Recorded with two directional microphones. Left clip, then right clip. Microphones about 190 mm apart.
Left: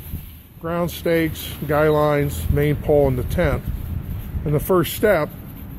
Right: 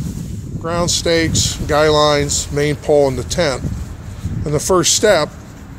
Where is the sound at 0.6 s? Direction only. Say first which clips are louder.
Right 5 dB; 5° right (ahead or behind).